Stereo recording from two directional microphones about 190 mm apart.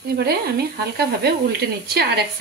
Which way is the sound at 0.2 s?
55° right (ahead or behind).